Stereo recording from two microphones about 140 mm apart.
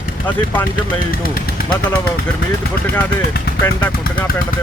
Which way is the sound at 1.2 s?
90° left.